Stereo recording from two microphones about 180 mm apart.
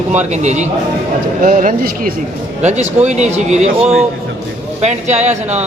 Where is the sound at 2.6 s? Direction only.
40° right (ahead or behind).